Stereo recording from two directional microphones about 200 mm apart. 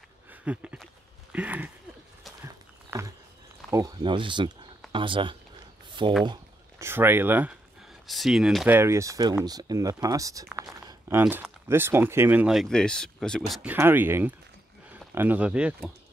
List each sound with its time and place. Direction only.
0.3 s a sound: 5° right (ahead or behind)
1.3 s speech: 10° right (ahead or behind)
2.4 s walk: 15° right (ahead or behind)
3.7 s speech: 20° right (ahead or behind)
5.9 s a sound: 25° right (ahead or behind)
6.2 s speech: 15° right (ahead or behind)